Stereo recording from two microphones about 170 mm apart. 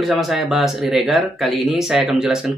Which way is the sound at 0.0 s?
Centre (ahead or behind).